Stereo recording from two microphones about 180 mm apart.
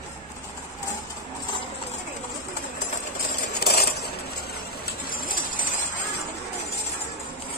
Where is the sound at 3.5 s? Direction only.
60° left (ahead or behind).